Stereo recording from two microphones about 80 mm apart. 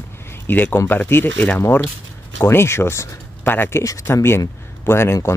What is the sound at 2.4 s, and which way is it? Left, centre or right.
Speech, left.